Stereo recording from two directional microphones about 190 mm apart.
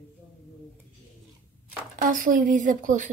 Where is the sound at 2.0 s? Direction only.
45° right (ahead or behind).